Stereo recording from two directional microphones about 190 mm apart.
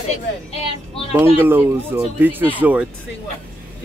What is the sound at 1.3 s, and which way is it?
A man's voice, 10° right (ahead or behind).